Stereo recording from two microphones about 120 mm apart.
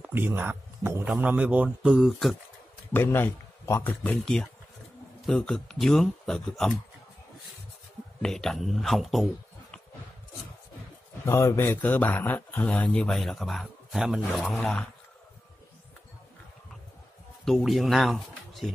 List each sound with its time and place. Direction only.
0.0 s speech: 15° right (ahead or behind); by 2.3 s centre (ahead or behind)
2.9 s a man's voice: 15° left (ahead or behind)
5.2 s speech: 5° left (ahead or behind)
8.2 s a man's voice: 5° left (ahead or behind)
11.2 s speech: 25° left (ahead or behind); by 14.4 s 5° right (ahead or behind)
14.4 s speech: 5° left (ahead or behind)
17.5 s speech: centre (ahead or behind)